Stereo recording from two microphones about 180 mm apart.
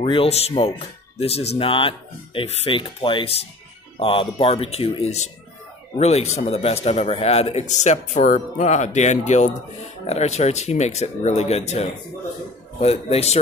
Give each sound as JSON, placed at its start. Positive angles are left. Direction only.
{"t": 0.0, "sound": "speech", "side_deg": 30}